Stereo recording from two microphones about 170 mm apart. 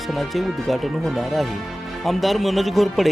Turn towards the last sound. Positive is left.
turn(degrees=0)  # may be behind; listen again after turning